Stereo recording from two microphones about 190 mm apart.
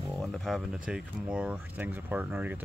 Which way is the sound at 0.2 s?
Centre (ahead or behind).